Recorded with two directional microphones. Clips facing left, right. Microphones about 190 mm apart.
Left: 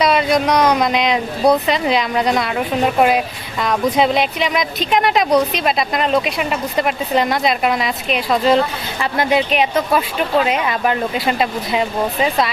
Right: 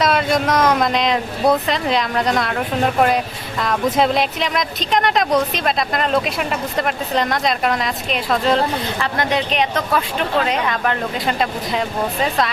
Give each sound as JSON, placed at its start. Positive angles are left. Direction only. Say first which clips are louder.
{"t": 0.0, "sound": "speech", "louder": "left 2 dB", "side_deg": 0}